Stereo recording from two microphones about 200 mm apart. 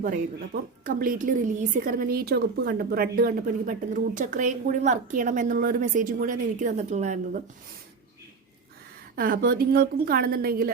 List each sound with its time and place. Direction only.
0.0 s a woman's voice: 45° right (ahead or behind)
9.1 s a woman's voice: 45° right (ahead or behind)